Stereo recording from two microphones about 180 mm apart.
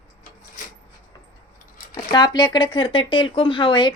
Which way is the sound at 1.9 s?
25° left (ahead or behind).